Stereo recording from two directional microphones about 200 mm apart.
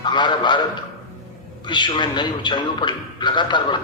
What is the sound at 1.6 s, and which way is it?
A man's voice, 20° left (ahead or behind).